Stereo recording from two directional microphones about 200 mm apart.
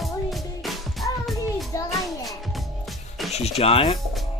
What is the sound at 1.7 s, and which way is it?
Music, 15° left (ahead or behind).